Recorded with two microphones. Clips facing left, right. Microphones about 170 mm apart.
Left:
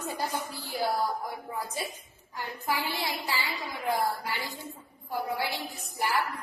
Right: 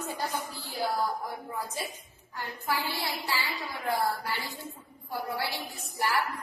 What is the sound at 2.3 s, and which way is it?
Speech, 15° left (ahead or behind).